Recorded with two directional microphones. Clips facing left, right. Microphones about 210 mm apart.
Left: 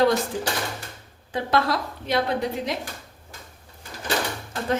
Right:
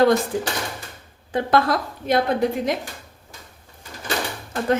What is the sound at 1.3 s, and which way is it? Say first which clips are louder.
Speech: right 4 dB; 50° right (ahead or behind).